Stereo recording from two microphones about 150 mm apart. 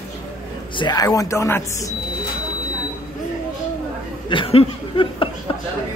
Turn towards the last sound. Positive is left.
turn(degrees=40)  # may be behind; listen again after turning